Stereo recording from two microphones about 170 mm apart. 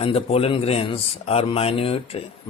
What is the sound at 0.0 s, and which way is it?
A man's voice, 35° left (ahead or behind).